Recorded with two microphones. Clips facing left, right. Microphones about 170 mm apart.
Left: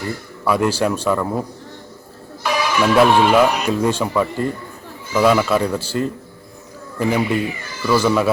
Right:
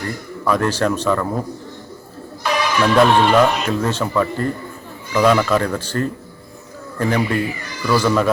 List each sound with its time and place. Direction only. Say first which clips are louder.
0.4 s speech: even; 10° left (ahead or behind)
2.4 s speech: even; 5° left (ahead or behind)